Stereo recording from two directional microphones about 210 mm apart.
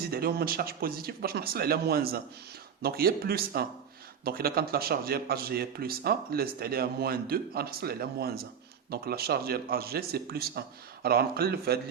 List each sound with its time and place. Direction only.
0.1 s a man's voice: 45° right (ahead or behind)